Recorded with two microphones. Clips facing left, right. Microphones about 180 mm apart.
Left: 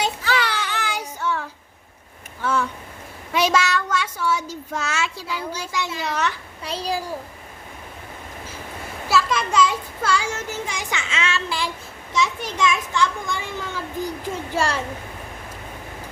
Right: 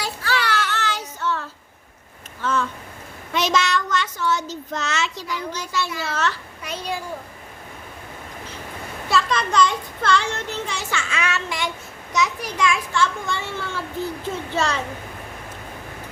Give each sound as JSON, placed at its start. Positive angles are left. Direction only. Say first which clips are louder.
{"t": 0.0, "sound": "child singing", "louder": "left 2 dB", "side_deg": 20}
{"t": 2.4, "sound": "a sound", "louder": "left 1 dB", "side_deg": 10}
{"t": 3.3, "sound": "child singing", "louder": "left 1 dB", "side_deg": 10}
{"t": 5.7, "sound": "speech", "louder": "even", "side_deg": 15}
{"t": 6.6, "sound": "a child's voice", "louder": "left 5 dB", "side_deg": 30}
{"t": 9.0, "sound": "a child's voice", "louder": "even", "side_deg": 0}